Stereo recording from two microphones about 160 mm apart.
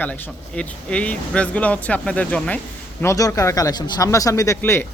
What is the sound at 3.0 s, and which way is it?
Speech, 20° left (ahead or behind).